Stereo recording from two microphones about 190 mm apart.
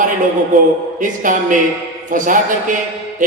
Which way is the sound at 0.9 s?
45° right (ahead or behind).